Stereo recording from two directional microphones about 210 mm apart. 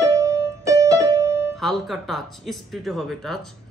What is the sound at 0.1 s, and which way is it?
Music, 15° right (ahead or behind).